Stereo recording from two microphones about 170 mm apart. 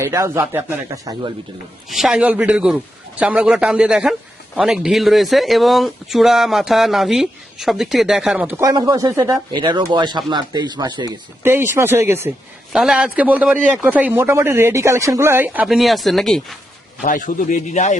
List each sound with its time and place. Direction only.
0.0 s speech: 15° right (ahead or behind)
1.9 s speech: centre (ahead or behind)
12.7 s speech: 5° right (ahead or behind)
17.0 s speech: 50° left (ahead or behind)